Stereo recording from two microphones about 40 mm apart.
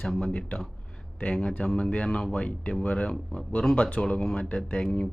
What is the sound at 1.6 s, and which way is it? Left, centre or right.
Speech, left.